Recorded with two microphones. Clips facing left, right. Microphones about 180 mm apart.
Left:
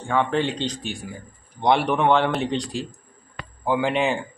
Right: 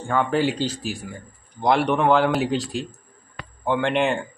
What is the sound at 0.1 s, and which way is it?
Speech, 5° right (ahead or behind).